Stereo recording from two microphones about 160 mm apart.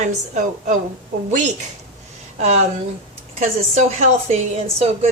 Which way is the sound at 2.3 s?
45° right (ahead or behind).